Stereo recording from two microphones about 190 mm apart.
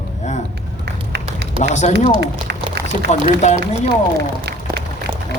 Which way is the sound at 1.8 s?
35° left (ahead or behind).